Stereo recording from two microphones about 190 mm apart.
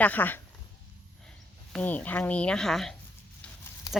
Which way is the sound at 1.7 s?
5° left (ahead or behind).